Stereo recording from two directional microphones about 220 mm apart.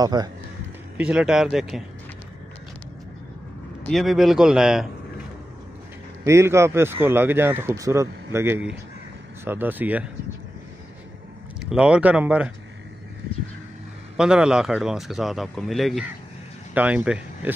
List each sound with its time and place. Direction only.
0.0 s a man's voice: 20° right (ahead or behind)
0.9 s speech: 5° right (ahead or behind)
3.8 s speech: centre (ahead or behind)
6.2 s speech: 10° right (ahead or behind)
11.7 s speech: 5° right (ahead or behind)
14.1 s speech: 5° right (ahead or behind)